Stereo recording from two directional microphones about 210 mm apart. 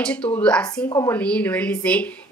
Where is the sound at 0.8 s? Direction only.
15° left (ahead or behind).